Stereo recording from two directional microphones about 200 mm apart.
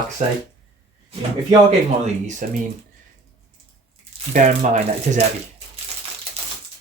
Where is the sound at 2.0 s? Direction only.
35° right (ahead or behind).